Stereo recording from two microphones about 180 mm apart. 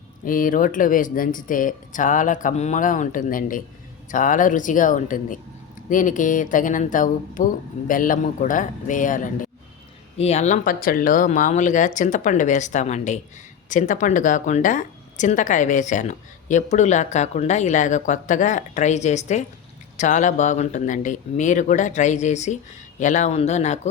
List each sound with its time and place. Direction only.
0.3 s speech: 50° left (ahead or behind)